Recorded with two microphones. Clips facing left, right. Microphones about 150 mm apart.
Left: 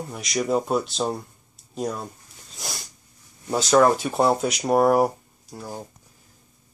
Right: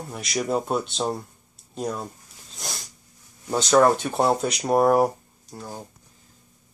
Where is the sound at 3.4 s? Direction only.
Centre (ahead or behind).